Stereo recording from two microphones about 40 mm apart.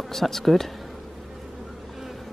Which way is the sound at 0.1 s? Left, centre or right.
Centre.